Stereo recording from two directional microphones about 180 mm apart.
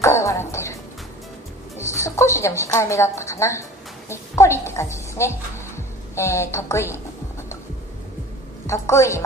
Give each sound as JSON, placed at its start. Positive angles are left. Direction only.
{"t": 0.0, "sound": "music", "side_deg": 15}
{"t": 1.8, "sound": "a woman's voice", "side_deg": 15}
{"t": 8.6, "sound": "a woman's voice", "side_deg": 15}